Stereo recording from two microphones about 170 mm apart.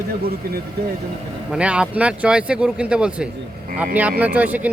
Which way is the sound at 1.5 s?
5° right (ahead or behind).